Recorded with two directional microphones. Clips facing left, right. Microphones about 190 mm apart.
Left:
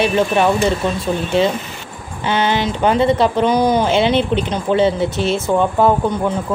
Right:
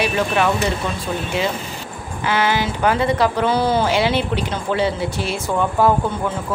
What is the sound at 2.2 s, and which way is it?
Speech, 25° left (ahead or behind).